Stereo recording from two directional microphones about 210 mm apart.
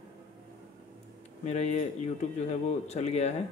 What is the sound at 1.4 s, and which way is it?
Speech, 35° left (ahead or behind).